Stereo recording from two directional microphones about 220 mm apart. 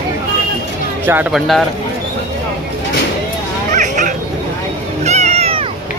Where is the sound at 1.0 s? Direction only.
5° right (ahead or behind).